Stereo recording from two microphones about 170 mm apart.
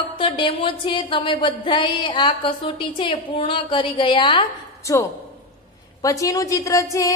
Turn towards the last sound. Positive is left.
turn(degrees=20)  # may be behind; listen again after turning